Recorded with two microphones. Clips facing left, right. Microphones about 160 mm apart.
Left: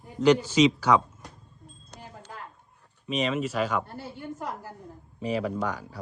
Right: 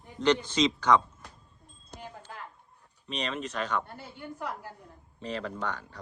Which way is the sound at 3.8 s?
40° left (ahead or behind).